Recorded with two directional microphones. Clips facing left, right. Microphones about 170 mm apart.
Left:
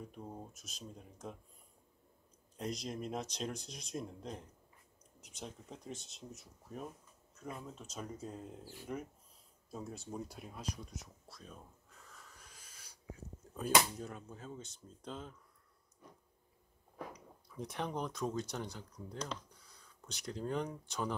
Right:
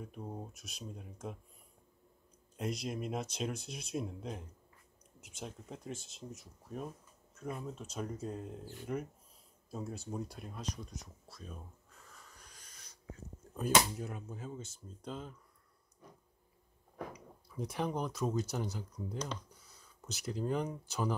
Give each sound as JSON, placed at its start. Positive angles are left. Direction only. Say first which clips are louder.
{"t": 0.1, "sound": "speech", "louder": "right 3 dB", "side_deg": -10}
{"t": 2.5, "sound": "speech", "louder": "right 3 dB", "side_deg": -5}
{"t": 12.1, "sound": "a sound", "louder": "even", "side_deg": 0}
{"t": 13.9, "sound": "speech", "louder": "right 3 dB", "side_deg": -5}
{"t": 17.1, "sound": "speech", "louder": "right 3 dB", "side_deg": 0}